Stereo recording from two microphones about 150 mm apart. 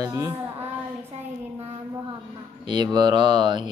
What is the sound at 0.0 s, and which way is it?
Speech, 20° right (ahead or behind).